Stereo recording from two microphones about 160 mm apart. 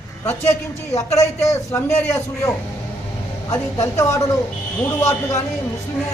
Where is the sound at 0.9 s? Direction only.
20° left (ahead or behind).